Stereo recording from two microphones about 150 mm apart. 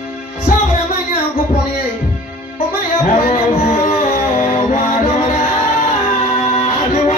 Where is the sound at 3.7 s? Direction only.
60° left (ahead or behind).